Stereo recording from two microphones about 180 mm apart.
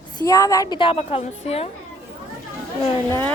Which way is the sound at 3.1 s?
10° left (ahead or behind).